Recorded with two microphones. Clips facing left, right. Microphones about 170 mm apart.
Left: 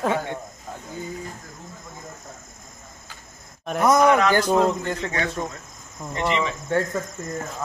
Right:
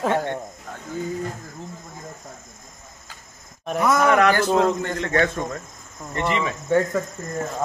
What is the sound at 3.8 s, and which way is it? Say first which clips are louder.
Speech: left 2 dB; 15° left (ahead or behind).